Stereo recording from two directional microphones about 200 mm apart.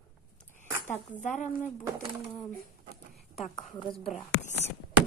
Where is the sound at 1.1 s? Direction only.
35° left (ahead or behind).